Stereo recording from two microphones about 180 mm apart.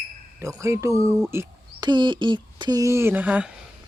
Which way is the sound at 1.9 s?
25° right (ahead or behind).